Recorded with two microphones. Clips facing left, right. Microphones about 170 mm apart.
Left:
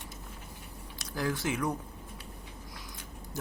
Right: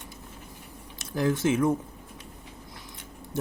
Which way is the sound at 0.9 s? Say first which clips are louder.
Right 7 dB; 20° right (ahead or behind).